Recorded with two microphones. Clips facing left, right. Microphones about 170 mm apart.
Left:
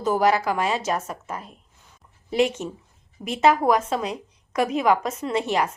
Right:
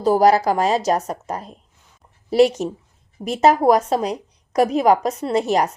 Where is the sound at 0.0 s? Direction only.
35° right (ahead or behind).